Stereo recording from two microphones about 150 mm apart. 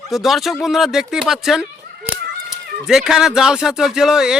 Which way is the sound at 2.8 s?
5° right (ahead or behind).